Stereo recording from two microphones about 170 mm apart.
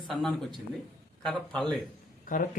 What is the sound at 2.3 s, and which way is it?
Speech, 50° left (ahead or behind).